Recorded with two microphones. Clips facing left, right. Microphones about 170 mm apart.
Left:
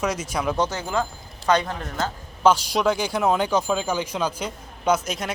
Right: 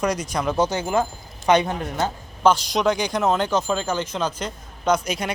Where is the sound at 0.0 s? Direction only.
5° left (ahead or behind).